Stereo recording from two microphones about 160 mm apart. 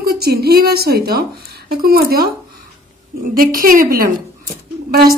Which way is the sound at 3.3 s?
60° right (ahead or behind).